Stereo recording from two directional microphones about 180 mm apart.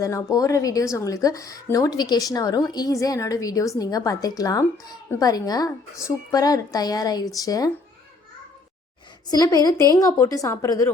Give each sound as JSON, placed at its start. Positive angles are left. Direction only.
{"t": 0.0, "sound": "speech", "side_deg": 20}
{"t": 9.3, "sound": "speech", "side_deg": 20}